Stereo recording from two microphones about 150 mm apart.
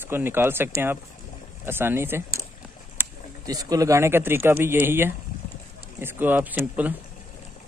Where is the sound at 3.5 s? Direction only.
25° right (ahead or behind).